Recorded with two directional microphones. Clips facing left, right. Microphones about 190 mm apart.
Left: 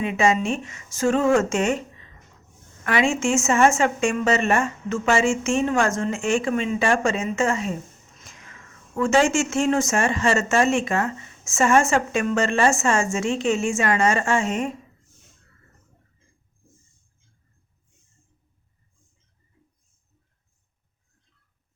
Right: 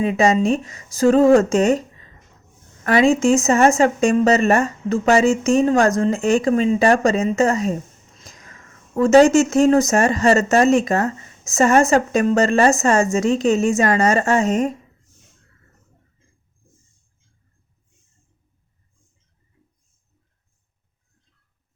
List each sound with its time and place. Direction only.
0.0 s speech: 35° right (ahead or behind)
2.8 s speech: 35° right (ahead or behind)
8.2 s a sound: 40° right (ahead or behind)
9.0 s speech: 40° right (ahead or behind)